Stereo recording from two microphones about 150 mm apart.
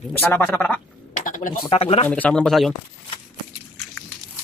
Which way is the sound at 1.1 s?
60° left (ahead or behind).